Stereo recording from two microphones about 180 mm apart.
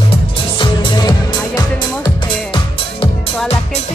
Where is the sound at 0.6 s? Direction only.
25° left (ahead or behind).